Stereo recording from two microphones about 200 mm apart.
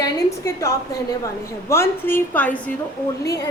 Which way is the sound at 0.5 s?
15° left (ahead or behind).